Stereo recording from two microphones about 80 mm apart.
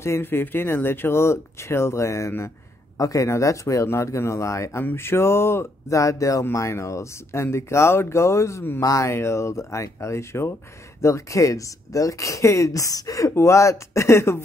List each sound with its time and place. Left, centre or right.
0.0 s speech: left